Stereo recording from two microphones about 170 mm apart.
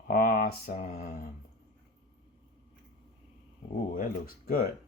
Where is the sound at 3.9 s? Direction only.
55° left (ahead or behind).